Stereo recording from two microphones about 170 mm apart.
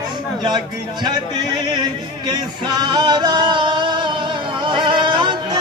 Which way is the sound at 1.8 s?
25° right (ahead or behind).